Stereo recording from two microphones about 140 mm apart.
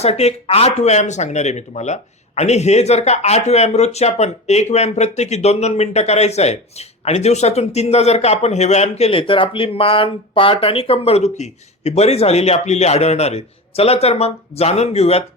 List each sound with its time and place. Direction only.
0.0 s speech: 50° left (ahead or behind)